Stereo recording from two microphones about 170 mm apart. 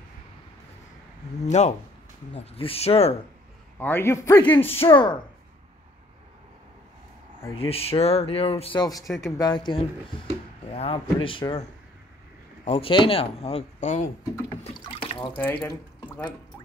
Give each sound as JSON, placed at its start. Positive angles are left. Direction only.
{"t": 1.4, "sound": "speech", "side_deg": 40}
{"t": 3.8, "sound": "a man's voice", "side_deg": 15}
{"t": 4.6, "sound": "speech", "side_deg": 30}
{"t": 7.5, "sound": "speech", "side_deg": 35}
{"t": 9.0, "sound": "speech", "side_deg": 0}
{"t": 9.4, "sound": "speech", "side_deg": 25}
{"t": 12.6, "sound": "speech", "side_deg": 35}
{"t": 15.0, "sound": "drip", "side_deg": 25}
{"t": 15.3, "sound": "a man's voice", "side_deg": 10}